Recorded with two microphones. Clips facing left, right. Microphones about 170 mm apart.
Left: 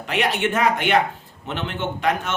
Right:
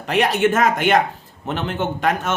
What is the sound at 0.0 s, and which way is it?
Speech, 40° right (ahead or behind).